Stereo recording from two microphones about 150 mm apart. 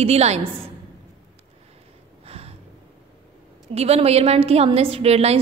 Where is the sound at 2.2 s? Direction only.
40° right (ahead or behind).